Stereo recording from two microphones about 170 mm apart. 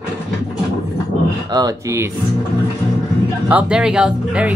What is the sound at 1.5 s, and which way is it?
Speech, 20° right (ahead or behind).